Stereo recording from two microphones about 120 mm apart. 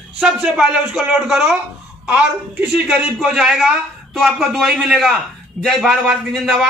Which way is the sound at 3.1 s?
5° right (ahead or behind).